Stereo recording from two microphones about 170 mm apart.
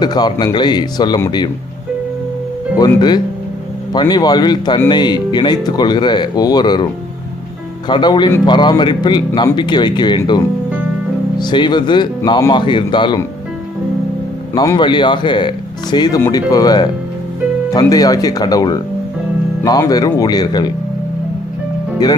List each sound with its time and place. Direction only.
0.0 s speech: 25° left (ahead or behind)
4.1 s speech: 25° left (ahead or behind)
7.9 s speech: 25° left (ahead or behind)
14.5 s speech: 25° left (ahead or behind)
22.0 s speech: 20° left (ahead or behind)